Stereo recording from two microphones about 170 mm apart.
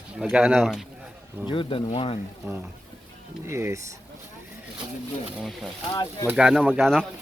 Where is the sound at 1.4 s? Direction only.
30° left (ahead or behind).